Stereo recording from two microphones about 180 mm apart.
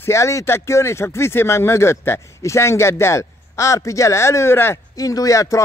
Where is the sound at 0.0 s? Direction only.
15° left (ahead or behind).